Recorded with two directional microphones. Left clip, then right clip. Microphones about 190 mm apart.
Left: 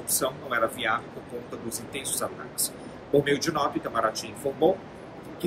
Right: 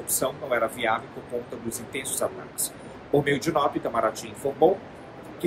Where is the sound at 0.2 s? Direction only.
15° right (ahead or behind).